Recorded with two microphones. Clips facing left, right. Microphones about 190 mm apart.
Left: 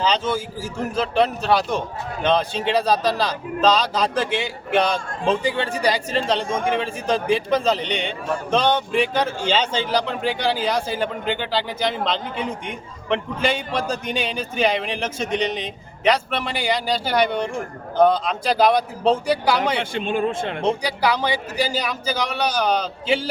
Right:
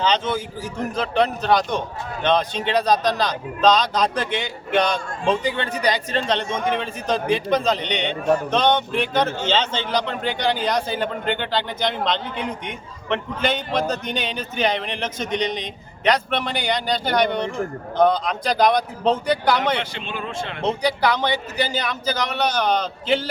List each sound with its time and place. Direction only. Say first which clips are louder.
0.0 s a man's voice: even; 5° left (ahead or behind)
19.8 s speech: left 8 dB; 50° left (ahead or behind)
20.7 s speech: right 1 dB; 10° left (ahead or behind)